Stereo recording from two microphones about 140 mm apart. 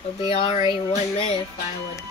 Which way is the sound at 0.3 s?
40° left (ahead or behind).